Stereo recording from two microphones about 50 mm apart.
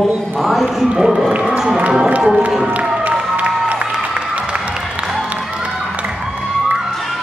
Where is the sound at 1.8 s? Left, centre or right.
Right.